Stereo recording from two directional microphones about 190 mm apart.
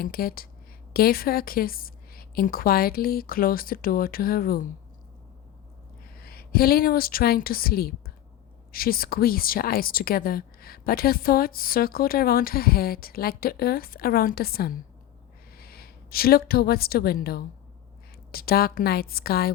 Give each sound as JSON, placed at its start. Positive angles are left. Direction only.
{"t": 0.0, "sound": "a woman's voice", "side_deg": 50}
{"t": 6.1, "sound": "a woman's voice", "side_deg": 55}